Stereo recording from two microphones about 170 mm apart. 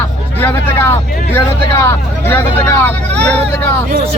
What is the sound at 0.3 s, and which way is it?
Speech, 10° left (ahead or behind).